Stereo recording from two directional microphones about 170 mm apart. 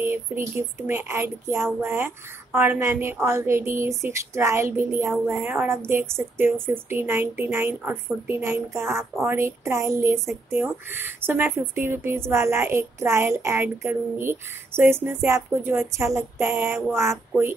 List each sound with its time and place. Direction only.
0.0 s speech: 10° right (ahead or behind)